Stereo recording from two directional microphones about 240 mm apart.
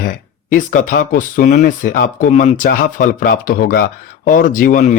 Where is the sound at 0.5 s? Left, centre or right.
Left.